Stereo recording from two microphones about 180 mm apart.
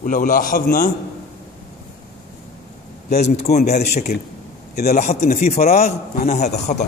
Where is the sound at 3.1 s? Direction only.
40° left (ahead or behind).